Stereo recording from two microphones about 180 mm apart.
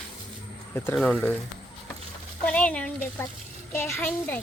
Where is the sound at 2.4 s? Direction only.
5° left (ahead or behind).